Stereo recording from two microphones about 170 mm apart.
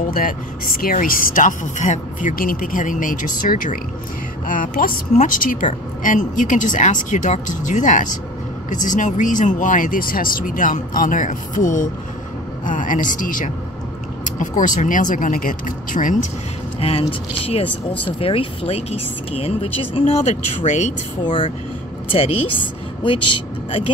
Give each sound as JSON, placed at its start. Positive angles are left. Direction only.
{"t": 0.1, "sound": "speech", "side_deg": 55}
{"t": 18.0, "sound": "speech", "side_deg": 30}
{"t": 21.2, "sound": "speech", "side_deg": 30}